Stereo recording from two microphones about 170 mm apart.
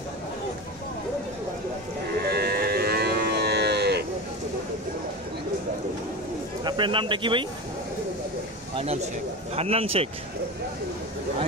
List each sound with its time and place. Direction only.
2.2 s moo: 65° right (ahead or behind)
6.6 s speech: 30° right (ahead or behind)
8.7 s speech: 40° right (ahead or behind)